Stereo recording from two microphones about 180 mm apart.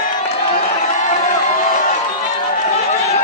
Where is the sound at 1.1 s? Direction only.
40° left (ahead or behind).